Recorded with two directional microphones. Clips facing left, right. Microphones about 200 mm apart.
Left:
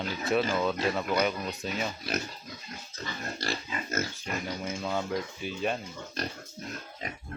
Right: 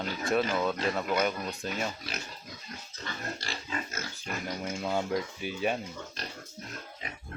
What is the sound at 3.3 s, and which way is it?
Pig, 40° left (ahead or behind).